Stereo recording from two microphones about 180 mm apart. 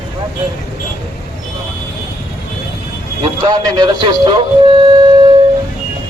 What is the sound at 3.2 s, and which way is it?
A man's voice, 25° right (ahead or behind).